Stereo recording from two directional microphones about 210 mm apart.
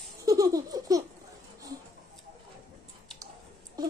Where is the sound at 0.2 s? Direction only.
15° right (ahead or behind).